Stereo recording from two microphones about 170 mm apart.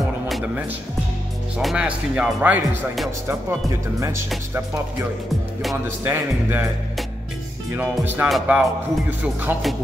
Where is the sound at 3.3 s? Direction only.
15° right (ahead or behind).